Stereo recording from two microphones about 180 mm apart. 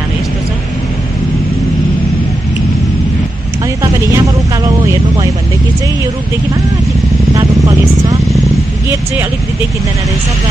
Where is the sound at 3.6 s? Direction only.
20° right (ahead or behind).